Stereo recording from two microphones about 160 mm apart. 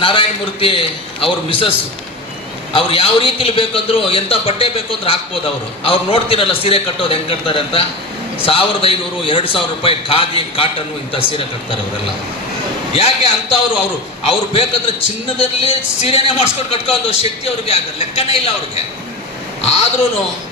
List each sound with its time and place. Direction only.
0.0 s a man's voice: 35° left (ahead or behind)
12.9 s a man's voice: 40° left (ahead or behind)
19.6 s a man's voice: 45° left (ahead or behind)